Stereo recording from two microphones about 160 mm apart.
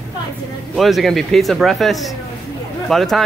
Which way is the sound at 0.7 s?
Centre (ahead or behind).